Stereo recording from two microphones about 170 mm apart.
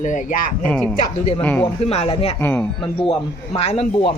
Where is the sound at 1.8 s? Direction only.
40° left (ahead or behind).